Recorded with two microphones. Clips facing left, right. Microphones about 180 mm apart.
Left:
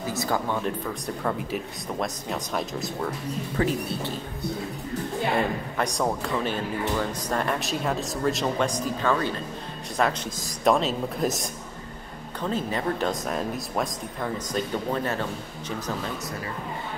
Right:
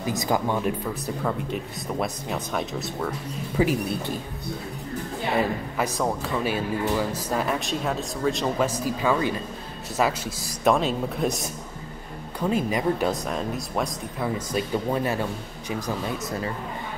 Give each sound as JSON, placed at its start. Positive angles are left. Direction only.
{"t": 0.0, "sound": "speech", "side_deg": -15}
{"t": 1.0, "sound": "speech", "side_deg": 0}
{"t": 3.5, "sound": "speech", "side_deg": -10}
{"t": 5.4, "sound": "speech", "side_deg": -5}
{"t": 12.4, "sound": "speech", "side_deg": -10}
{"t": 13.1, "sound": "speech", "side_deg": 0}